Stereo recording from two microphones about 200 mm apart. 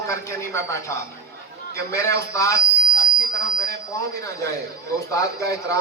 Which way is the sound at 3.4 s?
15° left (ahead or behind).